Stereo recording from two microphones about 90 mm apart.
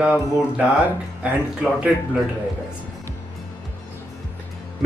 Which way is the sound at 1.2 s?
15° right (ahead or behind).